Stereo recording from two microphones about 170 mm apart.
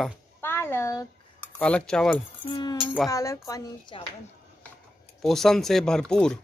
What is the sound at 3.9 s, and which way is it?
Speech, 30° left (ahead or behind).